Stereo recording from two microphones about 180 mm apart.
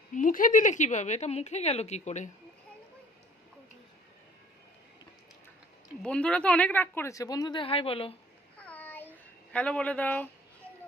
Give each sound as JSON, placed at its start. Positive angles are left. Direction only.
{"t": 0.1, "sound": "speech", "side_deg": 45}
{"t": 6.0, "sound": "speech", "side_deg": 5}
{"t": 8.5, "sound": "a sound", "side_deg": 10}
{"t": 9.5, "sound": "speech", "side_deg": 5}